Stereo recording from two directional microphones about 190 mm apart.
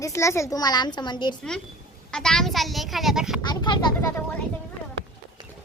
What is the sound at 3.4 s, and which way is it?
Speech, 25° left (ahead or behind).